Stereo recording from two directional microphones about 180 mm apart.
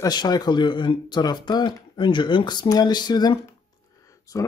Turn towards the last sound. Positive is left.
turn(degrees=20)  # may be behind; listen again after turning